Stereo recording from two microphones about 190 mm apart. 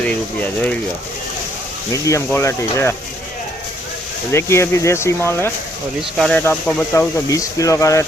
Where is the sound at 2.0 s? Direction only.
15° left (ahead or behind).